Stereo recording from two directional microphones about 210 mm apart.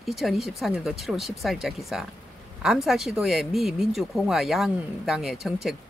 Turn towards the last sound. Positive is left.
turn(degrees=0)  # may be behind; listen again after turning